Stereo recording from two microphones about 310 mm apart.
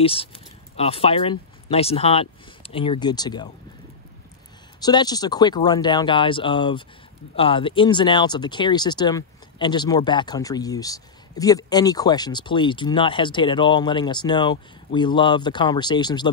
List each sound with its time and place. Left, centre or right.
0.0 s speech: centre
4.7 s speech: centre